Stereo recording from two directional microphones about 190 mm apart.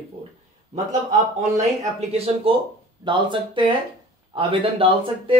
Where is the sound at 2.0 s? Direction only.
30° right (ahead or behind).